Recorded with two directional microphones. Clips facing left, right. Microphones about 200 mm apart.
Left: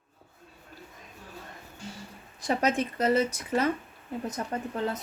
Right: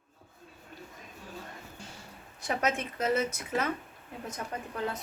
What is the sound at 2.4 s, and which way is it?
Speech, 35° left (ahead or behind).